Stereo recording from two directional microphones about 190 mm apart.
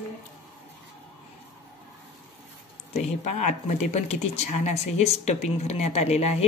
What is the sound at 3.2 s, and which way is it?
A woman's voice, 35° left (ahead or behind).